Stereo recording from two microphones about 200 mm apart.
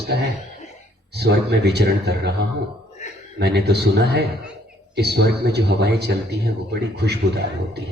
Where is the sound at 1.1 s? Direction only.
55° right (ahead or behind).